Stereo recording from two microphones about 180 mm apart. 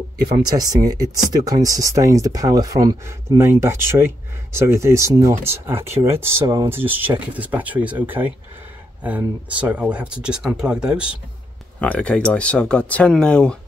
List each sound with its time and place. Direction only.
0.4 s speech: 20° right (ahead or behind); by 11.1 s 5° right (ahead or behind)
11.8 s speech: 5° left (ahead or behind)